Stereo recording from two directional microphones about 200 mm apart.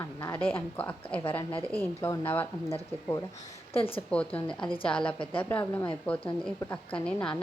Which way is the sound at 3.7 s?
25° left (ahead or behind).